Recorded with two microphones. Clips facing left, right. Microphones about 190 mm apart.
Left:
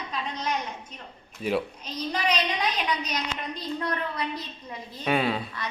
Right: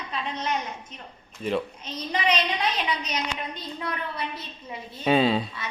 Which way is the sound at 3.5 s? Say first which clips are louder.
Left 3 dB; 5° right (ahead or behind).